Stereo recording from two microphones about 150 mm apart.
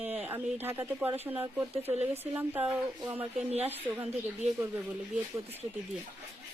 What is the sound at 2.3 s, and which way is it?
Speech, 15° right (ahead or behind).